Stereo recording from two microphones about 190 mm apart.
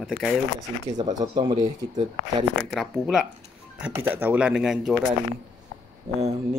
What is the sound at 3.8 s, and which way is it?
Speech, 10° right (ahead or behind).